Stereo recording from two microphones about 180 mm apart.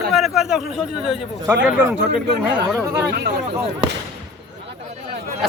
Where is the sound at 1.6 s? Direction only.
5° right (ahead or behind).